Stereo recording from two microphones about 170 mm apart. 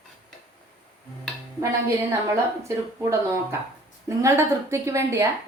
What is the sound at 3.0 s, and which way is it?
A woman's voice, 15° right (ahead or behind).